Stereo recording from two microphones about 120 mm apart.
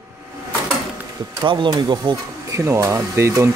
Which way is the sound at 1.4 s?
40° right (ahead or behind).